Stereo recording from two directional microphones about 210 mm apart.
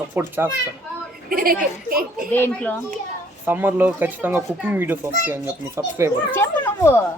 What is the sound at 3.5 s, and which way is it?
Speech, 10° right (ahead or behind).